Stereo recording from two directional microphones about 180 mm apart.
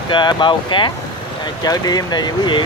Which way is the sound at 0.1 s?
25° left (ahead or behind).